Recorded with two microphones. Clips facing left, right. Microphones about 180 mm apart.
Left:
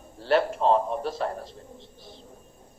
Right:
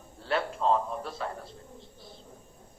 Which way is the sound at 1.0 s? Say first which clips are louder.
Left 7 dB; 45° left (ahead or behind).